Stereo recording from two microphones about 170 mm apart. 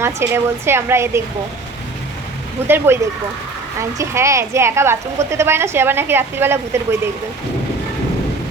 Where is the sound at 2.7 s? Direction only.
15° right (ahead or behind).